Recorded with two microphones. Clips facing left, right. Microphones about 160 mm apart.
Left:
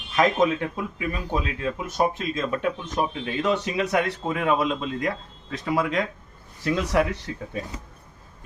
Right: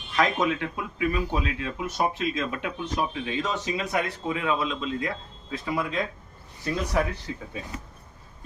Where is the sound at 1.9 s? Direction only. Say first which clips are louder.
Left 1 dB; 45° left (ahead or behind); by 4.2 s 70° left (ahead or behind).